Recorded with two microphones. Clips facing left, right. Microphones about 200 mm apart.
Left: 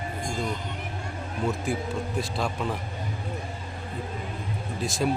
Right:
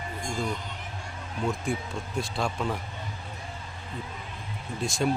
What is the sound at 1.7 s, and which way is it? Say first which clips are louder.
A man's voice: left 3 dB; 5° left (ahead or behind).